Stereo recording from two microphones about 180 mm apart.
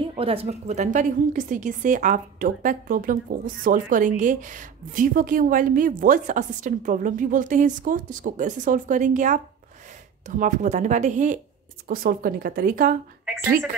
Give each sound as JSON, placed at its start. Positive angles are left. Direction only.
{"t": 0.2, "sound": "a woman's voice", "side_deg": -30}